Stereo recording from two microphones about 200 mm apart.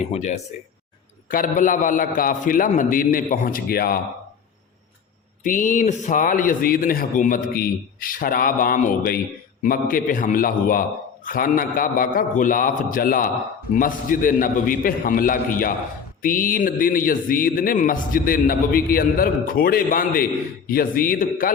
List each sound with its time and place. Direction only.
0.0 s a man's voice: 35° left (ahead or behind)
5.4 s a man's voice: 40° left (ahead or behind)